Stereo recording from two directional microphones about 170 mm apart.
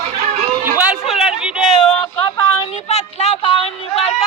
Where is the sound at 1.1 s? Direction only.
5° right (ahead or behind).